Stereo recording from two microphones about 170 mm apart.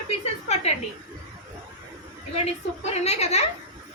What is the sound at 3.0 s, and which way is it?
Speech, 40° left (ahead or behind).